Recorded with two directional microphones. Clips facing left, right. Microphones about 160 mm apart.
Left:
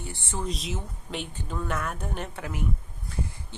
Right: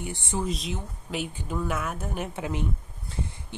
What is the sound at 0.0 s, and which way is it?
Speech, 15° right (ahead or behind).